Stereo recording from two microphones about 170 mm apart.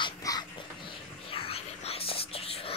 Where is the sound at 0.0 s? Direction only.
20° left (ahead or behind).